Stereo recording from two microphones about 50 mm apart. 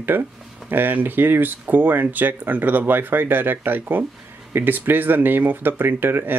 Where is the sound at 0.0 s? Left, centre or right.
Right.